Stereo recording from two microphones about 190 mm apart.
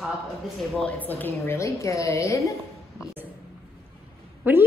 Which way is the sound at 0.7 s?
5° left (ahead or behind).